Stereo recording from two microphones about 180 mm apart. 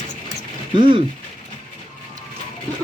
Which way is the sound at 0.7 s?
30° right (ahead or behind).